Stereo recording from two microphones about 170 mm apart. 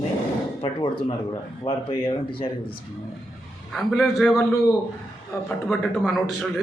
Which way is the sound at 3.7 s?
Centre (ahead or behind).